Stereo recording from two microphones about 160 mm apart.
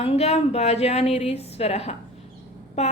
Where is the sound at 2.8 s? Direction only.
45° left (ahead or behind).